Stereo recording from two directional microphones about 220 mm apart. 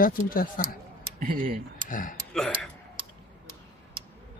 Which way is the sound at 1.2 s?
40° right (ahead or behind).